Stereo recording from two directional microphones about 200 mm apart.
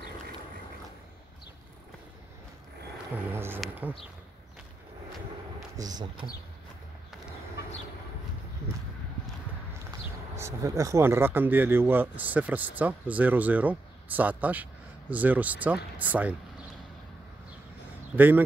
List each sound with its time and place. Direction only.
3.3 s speech: 10° right (ahead or behind)
5.8 s speech: 20° right (ahead or behind)
10.3 s speech: 15° right (ahead or behind)
18.1 s speech: 10° right (ahead or behind)